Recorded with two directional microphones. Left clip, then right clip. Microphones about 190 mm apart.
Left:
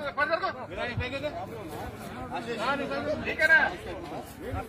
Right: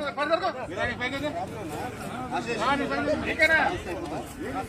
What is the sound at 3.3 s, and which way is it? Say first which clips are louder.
Speech: left 1 dB; 5° left (ahead or behind).